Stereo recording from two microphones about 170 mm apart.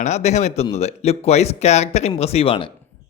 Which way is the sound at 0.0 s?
40° left (ahead or behind).